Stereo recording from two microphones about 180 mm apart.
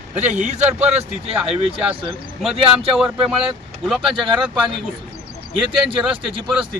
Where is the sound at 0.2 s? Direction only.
40° right (ahead or behind).